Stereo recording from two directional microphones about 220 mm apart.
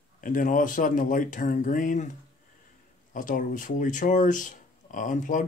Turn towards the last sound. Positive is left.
turn(degrees=35)  # may be behind; listen again after turning